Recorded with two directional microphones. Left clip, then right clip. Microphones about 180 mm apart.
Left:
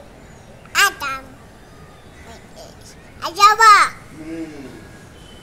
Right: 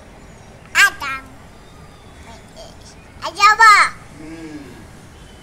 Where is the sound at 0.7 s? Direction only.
20° left (ahead or behind).